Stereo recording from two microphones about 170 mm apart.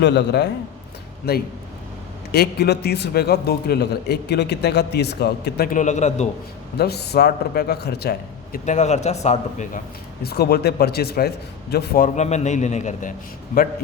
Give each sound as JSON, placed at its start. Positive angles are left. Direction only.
{"t": 0.0, "sound": "a man's voice", "side_deg": 90}
{"t": 1.3, "sound": "a man's voice", "side_deg": 70}
{"t": 5.7, "sound": "a man's voice", "side_deg": 45}
{"t": 6.7, "sound": "a man's voice", "side_deg": 70}
{"t": 8.5, "sound": "a man's voice", "side_deg": 45}
{"t": 10.2, "sound": "a man's voice", "side_deg": 70}